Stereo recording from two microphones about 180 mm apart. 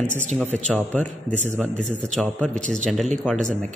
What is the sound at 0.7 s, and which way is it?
A man's voice, 10° left (ahead or behind).